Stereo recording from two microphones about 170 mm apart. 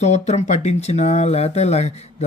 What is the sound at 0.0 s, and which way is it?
Speech, 40° left (ahead or behind).